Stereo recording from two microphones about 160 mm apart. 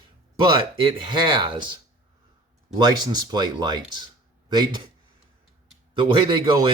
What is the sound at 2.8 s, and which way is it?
Speech, 25° right (ahead or behind).